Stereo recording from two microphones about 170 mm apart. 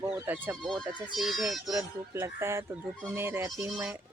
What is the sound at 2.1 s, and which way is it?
Speech, 15° right (ahead or behind).